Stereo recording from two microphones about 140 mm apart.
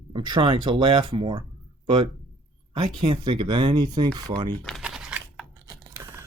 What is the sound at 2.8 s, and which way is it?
Speech, 35° right (ahead or behind).